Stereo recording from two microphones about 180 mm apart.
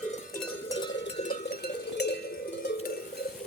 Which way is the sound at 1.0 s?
40° left (ahead or behind).